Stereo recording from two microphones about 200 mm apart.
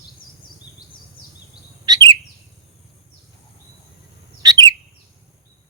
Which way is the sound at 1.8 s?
20° right (ahead or behind).